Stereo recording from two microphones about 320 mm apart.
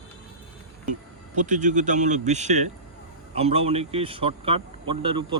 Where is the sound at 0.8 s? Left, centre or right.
Right.